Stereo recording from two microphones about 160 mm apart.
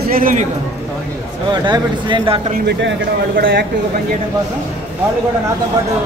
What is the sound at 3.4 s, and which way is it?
Speech, 70° right (ahead or behind).